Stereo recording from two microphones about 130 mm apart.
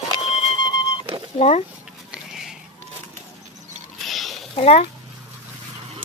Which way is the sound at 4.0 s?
Centre (ahead or behind).